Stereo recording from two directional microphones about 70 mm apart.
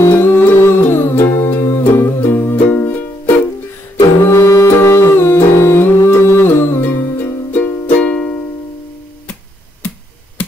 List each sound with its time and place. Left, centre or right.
0.1 s music: left
4.3 s music: left; by 8.4 s centre
9.8 s finger snapping: left